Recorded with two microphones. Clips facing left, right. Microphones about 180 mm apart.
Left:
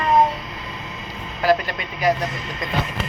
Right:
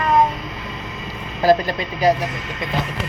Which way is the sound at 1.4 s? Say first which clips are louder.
Right 3 dB; 35° right (ahead or behind).